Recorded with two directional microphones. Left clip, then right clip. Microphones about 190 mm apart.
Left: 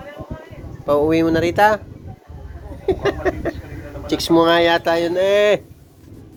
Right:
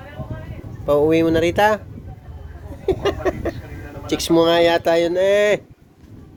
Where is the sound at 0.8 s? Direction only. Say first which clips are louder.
Even; 30° right (ahead or behind).